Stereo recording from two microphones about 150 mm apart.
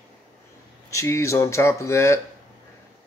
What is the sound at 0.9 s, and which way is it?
Speech, 20° left (ahead or behind).